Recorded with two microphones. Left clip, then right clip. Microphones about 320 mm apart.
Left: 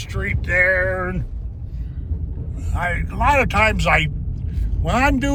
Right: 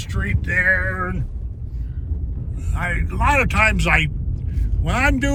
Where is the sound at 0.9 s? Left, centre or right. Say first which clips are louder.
Left 1 dB; left.